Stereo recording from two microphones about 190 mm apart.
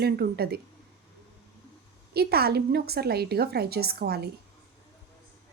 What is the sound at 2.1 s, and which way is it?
Speech, 55° right (ahead or behind).